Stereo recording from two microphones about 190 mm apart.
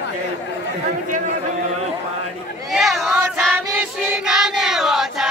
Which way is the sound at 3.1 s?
10° right (ahead or behind).